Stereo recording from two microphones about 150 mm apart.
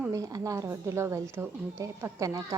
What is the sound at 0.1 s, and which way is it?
A woman's voice, 20° right (ahead or behind).